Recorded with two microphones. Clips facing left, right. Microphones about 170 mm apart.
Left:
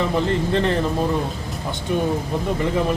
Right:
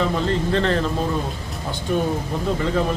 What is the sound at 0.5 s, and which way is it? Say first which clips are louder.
Speech: even; 15° left (ahead or behind).